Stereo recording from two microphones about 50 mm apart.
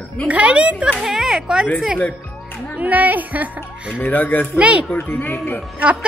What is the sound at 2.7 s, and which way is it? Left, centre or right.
Speech, right.